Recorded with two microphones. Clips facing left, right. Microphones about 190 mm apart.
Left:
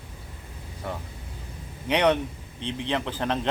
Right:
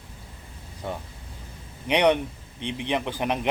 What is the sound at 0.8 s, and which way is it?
Speech, 20° right (ahead or behind).